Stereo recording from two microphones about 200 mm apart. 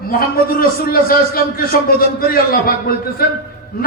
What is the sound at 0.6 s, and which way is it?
A man's voice, 45° left (ahead or behind).